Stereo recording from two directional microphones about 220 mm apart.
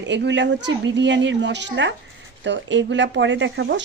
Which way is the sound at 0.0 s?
55° right (ahead or behind).